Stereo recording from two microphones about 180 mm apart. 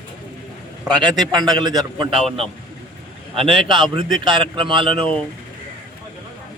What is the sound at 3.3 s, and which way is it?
A man's voice, 30° right (ahead or behind).